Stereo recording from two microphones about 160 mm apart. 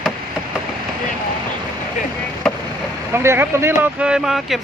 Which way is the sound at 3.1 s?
15° right (ahead or behind).